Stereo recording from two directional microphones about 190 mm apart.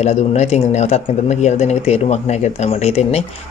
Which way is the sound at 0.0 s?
35° left (ahead or behind).